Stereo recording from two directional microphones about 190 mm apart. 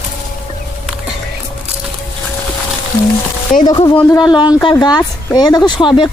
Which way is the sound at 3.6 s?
20° left (ahead or behind).